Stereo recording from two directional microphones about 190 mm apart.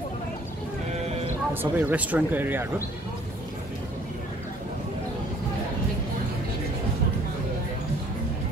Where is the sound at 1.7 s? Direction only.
10° right (ahead or behind).